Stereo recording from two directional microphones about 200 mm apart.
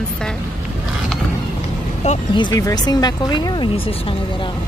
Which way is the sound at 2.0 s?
35° left (ahead or behind).